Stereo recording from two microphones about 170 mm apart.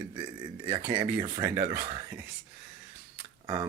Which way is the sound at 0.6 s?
30° right (ahead or behind).